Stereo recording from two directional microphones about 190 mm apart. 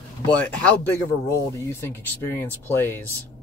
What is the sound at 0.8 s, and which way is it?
Speech, 10° left (ahead or behind).